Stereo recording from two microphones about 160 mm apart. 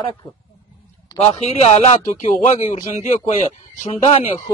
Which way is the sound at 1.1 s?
40° left (ahead or behind).